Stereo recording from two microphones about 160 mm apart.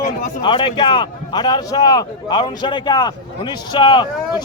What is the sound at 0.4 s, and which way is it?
A man's voice, 30° left (ahead or behind).